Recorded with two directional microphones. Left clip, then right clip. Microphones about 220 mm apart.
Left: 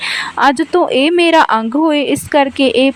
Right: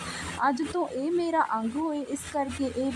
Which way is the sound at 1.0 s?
65° left (ahead or behind).